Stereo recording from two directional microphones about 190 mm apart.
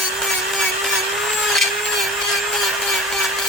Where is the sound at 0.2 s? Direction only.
Centre (ahead or behind).